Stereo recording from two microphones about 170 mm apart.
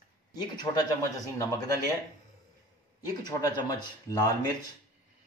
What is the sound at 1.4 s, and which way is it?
Speech, 20° left (ahead or behind).